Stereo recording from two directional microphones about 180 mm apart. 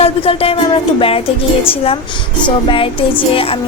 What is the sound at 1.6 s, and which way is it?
Music, 30° left (ahead or behind).